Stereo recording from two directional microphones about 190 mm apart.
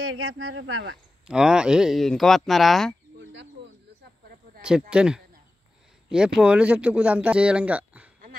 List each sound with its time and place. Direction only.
0.0 s speech: 90° right
1.2 s speech: 5° right (ahead or behind)
4.6 s speech: 5° right (ahead or behind)